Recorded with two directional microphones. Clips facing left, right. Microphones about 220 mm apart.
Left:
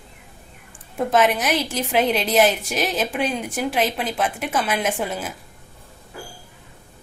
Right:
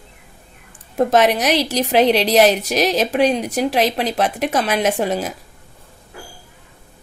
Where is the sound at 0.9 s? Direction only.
40° right (ahead or behind).